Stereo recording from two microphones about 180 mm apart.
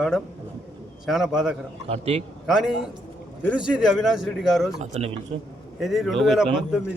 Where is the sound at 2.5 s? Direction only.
Centre (ahead or behind).